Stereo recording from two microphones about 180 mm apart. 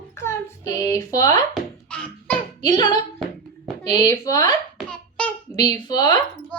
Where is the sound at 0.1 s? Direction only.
15° left (ahead or behind).